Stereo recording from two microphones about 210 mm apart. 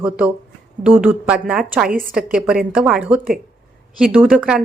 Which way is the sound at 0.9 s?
5° right (ahead or behind).